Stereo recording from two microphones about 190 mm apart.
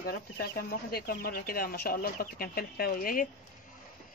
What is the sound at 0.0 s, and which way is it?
Speech, 55° left (ahead or behind).